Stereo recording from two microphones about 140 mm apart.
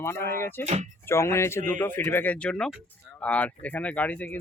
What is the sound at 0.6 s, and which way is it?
Speech, 55° right (ahead or behind).